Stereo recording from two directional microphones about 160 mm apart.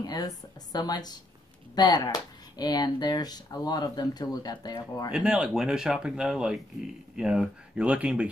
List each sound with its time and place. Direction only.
0.0 s speech: 25° left (ahead or behind)
5.1 s speech: 5° right (ahead or behind)